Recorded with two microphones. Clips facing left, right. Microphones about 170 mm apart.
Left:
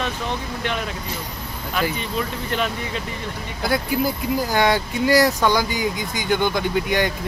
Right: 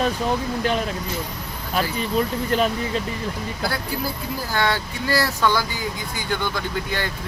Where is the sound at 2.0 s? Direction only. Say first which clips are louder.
Right 4 dB; 35° right (ahead or behind).